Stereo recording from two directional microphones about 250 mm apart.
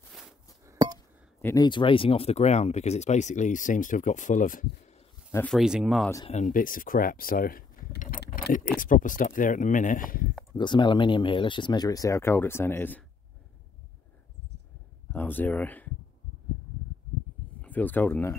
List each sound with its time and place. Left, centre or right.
0.1 s a sound: centre
0.7 s a sound: centre
0.9 s speech: centre; by 5.0 s left
5.3 s speech: centre
6.3 s speech: left
10.5 s speech: centre
15.0 s speech: centre
17.6 s speech: centre